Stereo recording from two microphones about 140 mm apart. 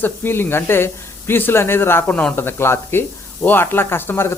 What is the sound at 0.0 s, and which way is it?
Speech, 15° left (ahead or behind).